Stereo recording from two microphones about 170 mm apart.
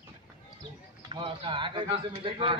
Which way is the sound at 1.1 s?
30° right (ahead or behind).